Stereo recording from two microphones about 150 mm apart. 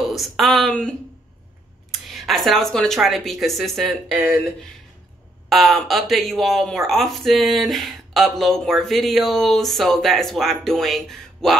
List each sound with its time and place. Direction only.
0.0 s speech: centre (ahead or behind)
5.5 s speech: centre (ahead or behind)